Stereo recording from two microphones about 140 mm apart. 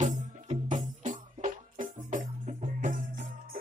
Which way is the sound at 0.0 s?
55° right (ahead or behind).